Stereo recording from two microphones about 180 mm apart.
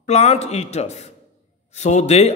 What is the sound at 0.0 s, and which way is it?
A man's voice, 40° left (ahead or behind).